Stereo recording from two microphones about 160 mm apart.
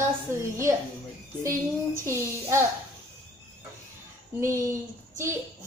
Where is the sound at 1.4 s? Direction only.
15° right (ahead or behind).